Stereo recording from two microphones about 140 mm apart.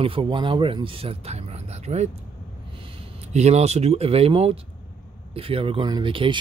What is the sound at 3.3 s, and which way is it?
Speech, 50° right (ahead or behind).